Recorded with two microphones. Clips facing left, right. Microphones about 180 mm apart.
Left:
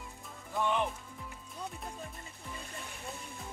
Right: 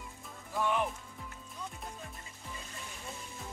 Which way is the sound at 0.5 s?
5° right (ahead or behind).